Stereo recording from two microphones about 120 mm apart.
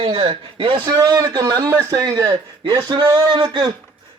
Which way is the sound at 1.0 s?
30° right (ahead or behind).